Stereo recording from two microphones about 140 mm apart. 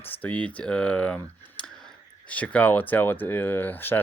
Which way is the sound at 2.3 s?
10° left (ahead or behind).